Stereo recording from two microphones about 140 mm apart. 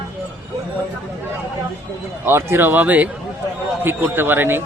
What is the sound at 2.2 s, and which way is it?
Speech, 15° right (ahead or behind).